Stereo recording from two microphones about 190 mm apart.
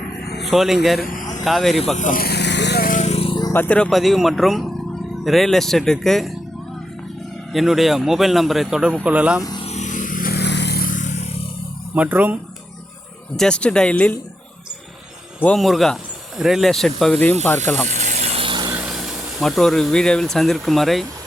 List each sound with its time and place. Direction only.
0.4 s a man's voice: centre (ahead or behind)
2.0 s vehicle: 45° left (ahead or behind); by 3.5 s 25° left (ahead or behind)
3.5 s a man's voice: 10° left (ahead or behind)
7.5 s a man's voice: centre (ahead or behind)
9.4 s speech: 20° left (ahead or behind)
9.6 s vehicle: 40° left (ahead or behind)
11.9 s speech: 10° right (ahead or behind)
13.3 s a man's voice: 5° left (ahead or behind)
15.4 s a man's voice: 5° left (ahead or behind)
17.8 s vehicle: 40° right (ahead or behind); by 18.8 s 25° right (ahead or behind)
18.8 s speech: centre (ahead or behind)